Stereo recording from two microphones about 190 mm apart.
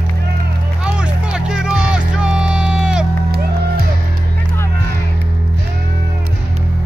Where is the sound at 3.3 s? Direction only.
55° right (ahead or behind).